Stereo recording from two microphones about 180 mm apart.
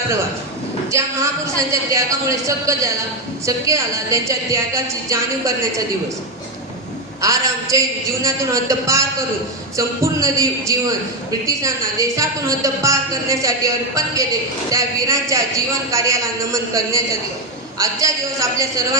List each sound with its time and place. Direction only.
0.9 s a man's voice: 15° right (ahead or behind)
7.2 s a man's voice: 15° right (ahead or behind)